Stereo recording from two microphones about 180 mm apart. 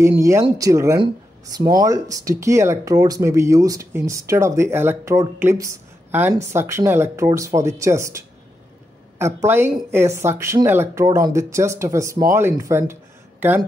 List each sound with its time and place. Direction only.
0.0 s speech: 15° right (ahead or behind)